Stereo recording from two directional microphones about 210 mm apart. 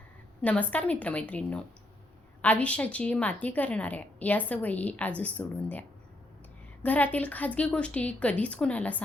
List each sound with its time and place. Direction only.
0.4 s a woman's voice: 5° left (ahead or behind)
6.8 s a woman's voice: 5° left (ahead or behind)